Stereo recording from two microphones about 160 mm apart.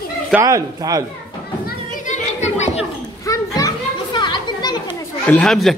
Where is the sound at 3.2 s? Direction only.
20° left (ahead or behind).